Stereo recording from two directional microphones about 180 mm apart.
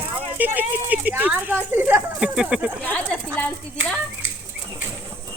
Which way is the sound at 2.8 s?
5° left (ahead or behind).